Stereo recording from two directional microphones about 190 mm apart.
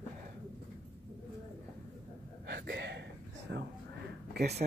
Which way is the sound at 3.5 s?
60° right (ahead or behind).